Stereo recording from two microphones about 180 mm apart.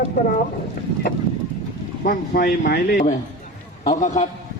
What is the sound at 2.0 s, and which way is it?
A man's voice, 55° left (ahead or behind).